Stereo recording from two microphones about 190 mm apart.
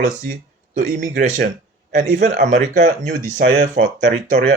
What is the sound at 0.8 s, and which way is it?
Speech, 40° right (ahead or behind).